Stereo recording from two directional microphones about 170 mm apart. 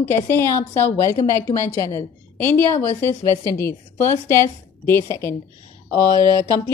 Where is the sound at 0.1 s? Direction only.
10° left (ahead or behind).